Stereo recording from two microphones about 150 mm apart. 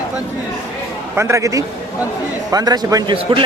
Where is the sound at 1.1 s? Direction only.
20° right (ahead or behind).